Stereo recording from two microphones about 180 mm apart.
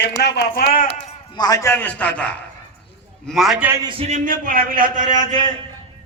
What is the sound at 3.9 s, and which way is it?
Speech, 35° right (ahead or behind).